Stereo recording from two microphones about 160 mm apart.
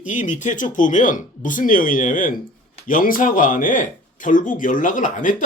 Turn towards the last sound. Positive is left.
turn(degrees=55)  # may be behind; listen again after turning